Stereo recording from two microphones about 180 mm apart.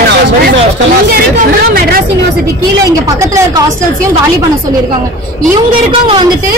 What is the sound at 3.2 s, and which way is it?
Speech, 15° right (ahead or behind).